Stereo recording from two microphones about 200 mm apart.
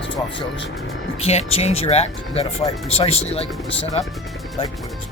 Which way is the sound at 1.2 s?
30° left (ahead or behind).